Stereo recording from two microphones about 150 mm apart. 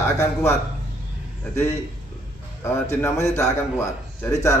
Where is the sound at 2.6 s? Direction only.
15° left (ahead or behind).